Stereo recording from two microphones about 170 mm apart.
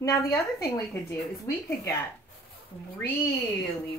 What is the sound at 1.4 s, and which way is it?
Speech, 20° left (ahead or behind).